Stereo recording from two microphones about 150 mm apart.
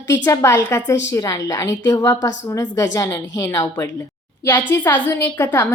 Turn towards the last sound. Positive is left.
turn(degrees=15)  # may be behind; listen again after turning